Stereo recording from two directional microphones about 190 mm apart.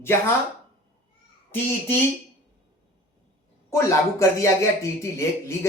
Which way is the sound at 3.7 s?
15° left (ahead or behind).